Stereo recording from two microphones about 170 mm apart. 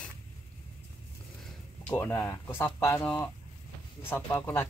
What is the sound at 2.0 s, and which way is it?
Speech, 15° left (ahead or behind).